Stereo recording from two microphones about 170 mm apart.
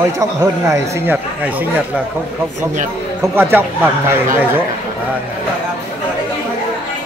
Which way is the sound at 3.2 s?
15° right (ahead or behind).